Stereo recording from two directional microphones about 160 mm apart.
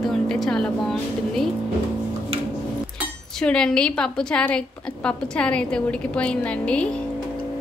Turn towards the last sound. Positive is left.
turn(degrees=5)  # may be behind; listen again after turning